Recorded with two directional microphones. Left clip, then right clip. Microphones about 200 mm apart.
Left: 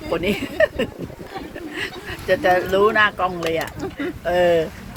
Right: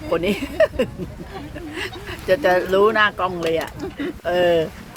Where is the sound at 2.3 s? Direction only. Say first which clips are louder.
Even; 20° right (ahead or behind).